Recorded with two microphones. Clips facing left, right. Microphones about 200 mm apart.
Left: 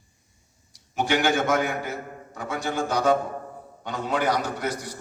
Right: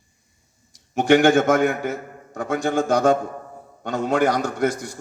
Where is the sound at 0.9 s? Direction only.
50° right (ahead or behind).